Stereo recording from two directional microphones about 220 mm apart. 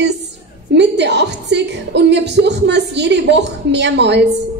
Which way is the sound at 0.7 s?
50° right (ahead or behind).